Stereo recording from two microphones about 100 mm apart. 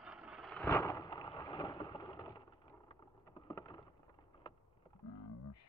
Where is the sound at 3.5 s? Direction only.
40° left (ahead or behind).